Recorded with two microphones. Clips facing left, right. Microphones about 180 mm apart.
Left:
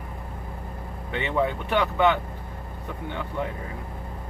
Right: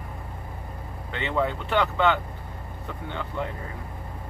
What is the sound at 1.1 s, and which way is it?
Speech, 15° left (ahead or behind).